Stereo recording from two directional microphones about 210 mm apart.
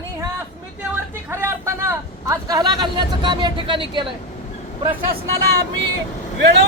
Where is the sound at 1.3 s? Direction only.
10° right (ahead or behind).